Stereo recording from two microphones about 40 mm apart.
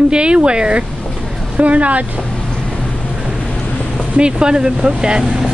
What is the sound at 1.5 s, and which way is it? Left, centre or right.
Speech, right.